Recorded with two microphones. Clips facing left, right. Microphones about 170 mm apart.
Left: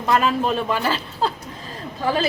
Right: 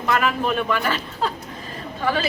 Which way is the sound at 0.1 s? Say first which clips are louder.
Left 2 dB; 30° left (ahead or behind).